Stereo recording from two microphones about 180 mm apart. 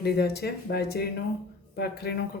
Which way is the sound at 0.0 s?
65° left (ahead or behind).